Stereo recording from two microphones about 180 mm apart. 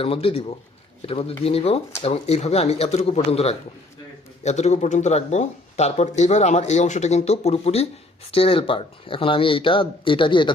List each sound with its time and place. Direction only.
0.0 s speech: 30° left (ahead or behind)